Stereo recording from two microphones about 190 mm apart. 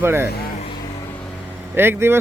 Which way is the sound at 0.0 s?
10° right (ahead or behind).